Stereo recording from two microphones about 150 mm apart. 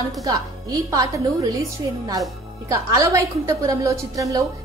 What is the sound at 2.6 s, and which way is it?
A woman's voice, 20° right (ahead or behind).